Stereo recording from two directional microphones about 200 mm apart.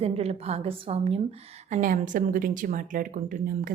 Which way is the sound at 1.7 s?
40° right (ahead or behind).